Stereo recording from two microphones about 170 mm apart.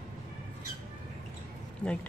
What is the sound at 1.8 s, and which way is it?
Speech, 5° left (ahead or behind).